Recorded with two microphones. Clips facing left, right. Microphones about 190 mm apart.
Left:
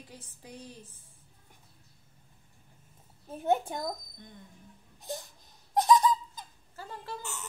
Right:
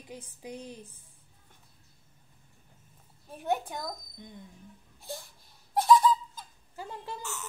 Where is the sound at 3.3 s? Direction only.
25° left (ahead or behind).